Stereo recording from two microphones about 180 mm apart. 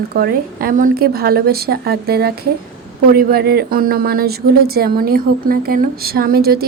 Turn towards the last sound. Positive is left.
turn(degrees=-60)  # may be behind; listen again after turning